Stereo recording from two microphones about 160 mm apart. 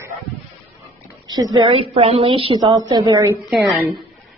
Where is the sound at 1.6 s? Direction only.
35° right (ahead or behind).